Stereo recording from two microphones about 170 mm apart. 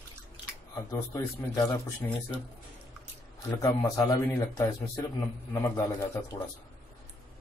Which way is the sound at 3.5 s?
15° left (ahead or behind).